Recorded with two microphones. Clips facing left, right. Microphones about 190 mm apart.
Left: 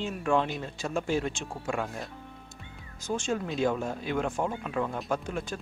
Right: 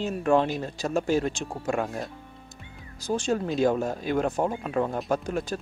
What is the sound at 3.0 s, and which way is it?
Speech, 35° right (ahead or behind).